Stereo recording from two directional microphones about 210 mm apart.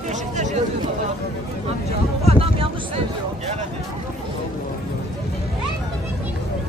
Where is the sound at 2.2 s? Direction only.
25° right (ahead or behind).